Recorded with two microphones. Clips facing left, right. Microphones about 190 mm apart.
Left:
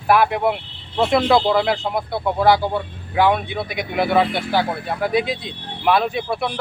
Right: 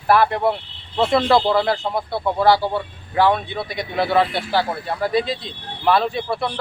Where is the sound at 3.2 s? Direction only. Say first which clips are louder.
Even; 10° left (ahead or behind).